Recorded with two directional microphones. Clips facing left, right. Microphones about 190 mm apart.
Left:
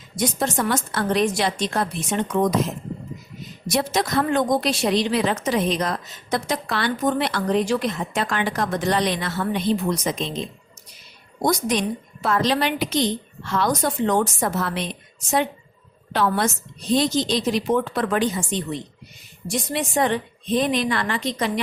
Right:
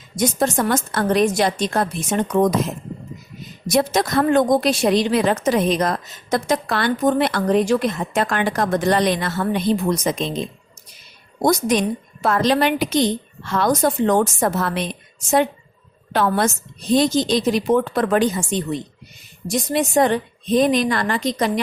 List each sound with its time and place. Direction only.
0.2 s a woman's voice: 45° right (ahead or behind)
3.7 s a woman's voice: 50° right (ahead or behind)
11.4 s a woman's voice: 50° right (ahead or behind)
16.1 s a woman's voice: 50° right (ahead or behind)
19.5 s a woman's voice: 40° right (ahead or behind)